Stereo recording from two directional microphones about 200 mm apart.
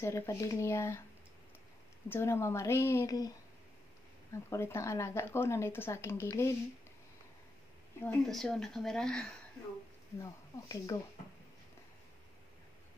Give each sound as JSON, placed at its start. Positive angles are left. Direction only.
{"t": 0.0, "sound": "speech", "side_deg": 15}
{"t": 2.0, "sound": "speech", "side_deg": 10}
{"t": 4.5, "sound": "speech", "side_deg": 15}
{"t": 8.0, "sound": "speech", "side_deg": 5}
{"t": 10.1, "sound": "speech", "side_deg": 15}